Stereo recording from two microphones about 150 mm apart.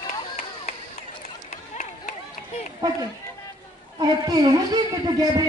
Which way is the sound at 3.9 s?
30° right (ahead or behind).